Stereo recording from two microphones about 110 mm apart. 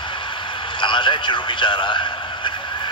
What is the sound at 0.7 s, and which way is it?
A man's voice, 45° left (ahead or behind).